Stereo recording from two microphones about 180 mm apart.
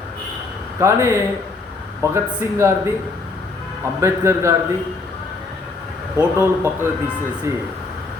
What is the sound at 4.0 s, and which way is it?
Speech, 15° right (ahead or behind).